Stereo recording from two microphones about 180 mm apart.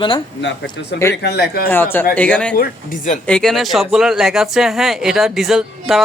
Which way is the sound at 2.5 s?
55° left (ahead or behind).